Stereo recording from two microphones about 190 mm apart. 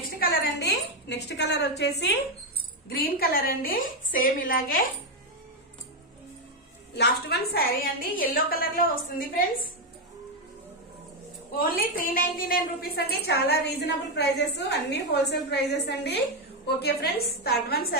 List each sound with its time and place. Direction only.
0.2 s a woman's voice: 55° left (ahead or behind)
2.9 s a woman's voice: 50° left (ahead or behind)
7.0 s a woman's voice: 55° left (ahead or behind)
11.6 s a woman's voice: 50° left (ahead or behind)